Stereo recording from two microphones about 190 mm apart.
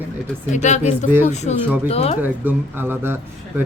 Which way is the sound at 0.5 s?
40° left (ahead or behind).